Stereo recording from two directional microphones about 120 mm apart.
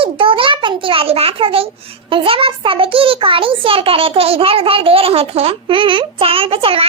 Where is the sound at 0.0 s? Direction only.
45° right (ahead or behind).